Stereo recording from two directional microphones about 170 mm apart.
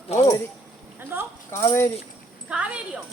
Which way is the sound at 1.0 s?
10° right (ahead or behind).